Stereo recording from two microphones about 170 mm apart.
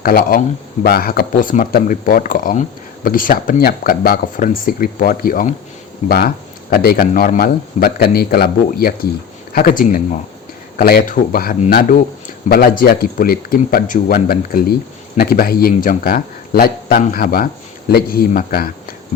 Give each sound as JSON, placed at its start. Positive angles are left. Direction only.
{"t": 0.0, "sound": "speech", "side_deg": 60}